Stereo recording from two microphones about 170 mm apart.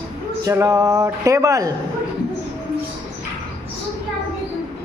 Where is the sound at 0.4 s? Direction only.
20° right (ahead or behind).